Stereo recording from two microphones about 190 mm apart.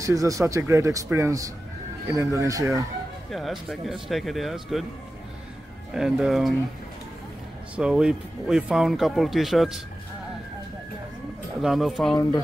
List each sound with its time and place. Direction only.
0.0 s speech: 15° right (ahead or behind)
3.3 s speech: centre (ahead or behind)
5.9 s speech: centre (ahead or behind)
7.7 s speech: 5° right (ahead or behind)
11.6 s speech: centre (ahead or behind)